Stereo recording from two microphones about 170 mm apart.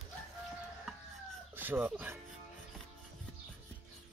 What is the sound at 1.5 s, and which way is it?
Speech, 10° right (ahead or behind).